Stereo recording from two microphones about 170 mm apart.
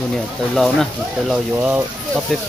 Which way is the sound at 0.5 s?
Centre (ahead or behind).